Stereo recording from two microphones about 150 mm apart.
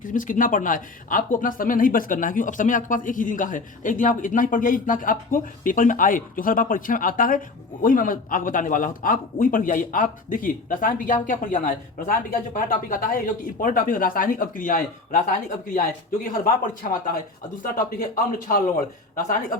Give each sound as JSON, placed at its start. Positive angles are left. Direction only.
{"t": 0.0, "sound": "a man's voice", "side_deg": 60}
{"t": 17.6, "sound": "a man's voice", "side_deg": 65}